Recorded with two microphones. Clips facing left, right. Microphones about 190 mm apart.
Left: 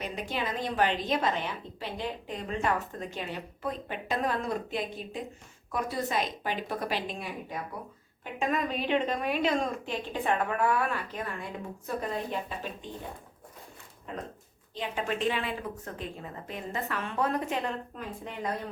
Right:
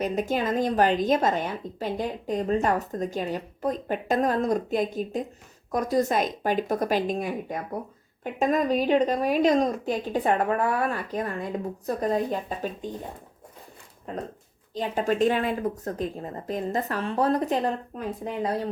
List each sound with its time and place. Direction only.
0.0 s a woman's voice: 45° right (ahead or behind)
14.1 s a woman's voice: 40° right (ahead or behind)